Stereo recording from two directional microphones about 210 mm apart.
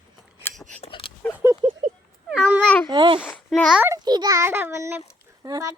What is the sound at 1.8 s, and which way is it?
Cat, 40° right (ahead or behind).